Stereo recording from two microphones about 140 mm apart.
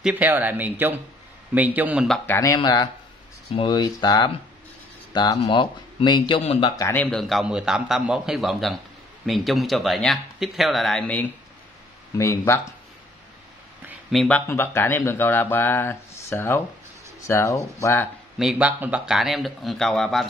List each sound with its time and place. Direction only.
0.0 s speech: 10° right (ahead or behind)
2.2 s a man's voice: 20° left (ahead or behind); by 6.7 s 40° left (ahead or behind)
6.8 s speech: 15° left (ahead or behind)
7.1 s speech: centre (ahead or behind)
12.2 s speech: 20° left (ahead or behind)
14.1 s speech: 5° left (ahead or behind)
14.5 s speech: 15° left (ahead or behind)
18.4 s speech: 5° right (ahead or behind)